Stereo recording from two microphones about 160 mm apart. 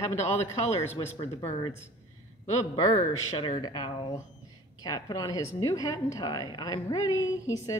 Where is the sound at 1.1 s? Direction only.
40° left (ahead or behind).